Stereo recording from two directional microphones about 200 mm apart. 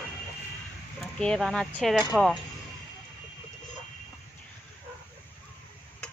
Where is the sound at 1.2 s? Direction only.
Centre (ahead or behind).